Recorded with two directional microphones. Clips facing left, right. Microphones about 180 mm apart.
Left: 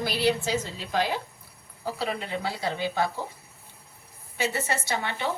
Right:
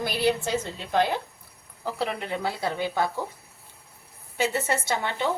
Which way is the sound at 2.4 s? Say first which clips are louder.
Right 2 dB; 50° right (ahead or behind).